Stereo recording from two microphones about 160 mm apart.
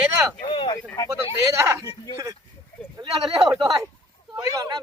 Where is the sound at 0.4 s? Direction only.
30° left (ahead or behind).